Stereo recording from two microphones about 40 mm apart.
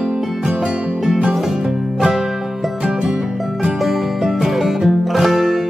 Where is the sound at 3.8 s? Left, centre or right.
Centre.